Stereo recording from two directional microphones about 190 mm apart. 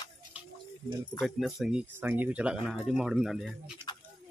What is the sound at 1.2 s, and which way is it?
Speech, centre (ahead or behind).